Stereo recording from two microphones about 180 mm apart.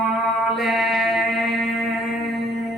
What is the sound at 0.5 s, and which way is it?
Music, centre (ahead or behind).